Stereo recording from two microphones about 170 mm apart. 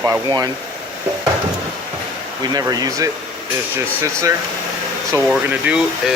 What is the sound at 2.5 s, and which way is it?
Speech, 25° right (ahead or behind).